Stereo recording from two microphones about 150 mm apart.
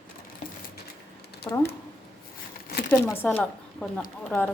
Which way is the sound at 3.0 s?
15° left (ahead or behind).